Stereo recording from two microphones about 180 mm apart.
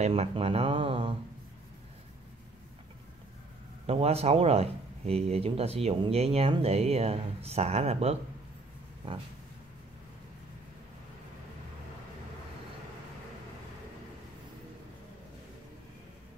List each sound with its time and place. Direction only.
0.0 s speech: 35° right (ahead or behind)
3.8 s speech: 35° right (ahead or behind)